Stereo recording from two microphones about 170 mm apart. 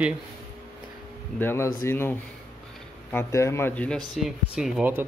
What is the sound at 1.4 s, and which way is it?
Speech, 15° left (ahead or behind).